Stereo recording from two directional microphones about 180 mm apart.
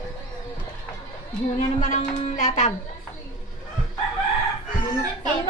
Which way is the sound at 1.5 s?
45° left (ahead or behind).